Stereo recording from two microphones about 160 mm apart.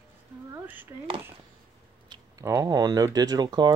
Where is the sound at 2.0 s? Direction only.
25° right (ahead or behind).